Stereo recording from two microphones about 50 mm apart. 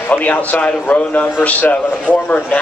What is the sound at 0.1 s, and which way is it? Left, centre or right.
A man's voice, left.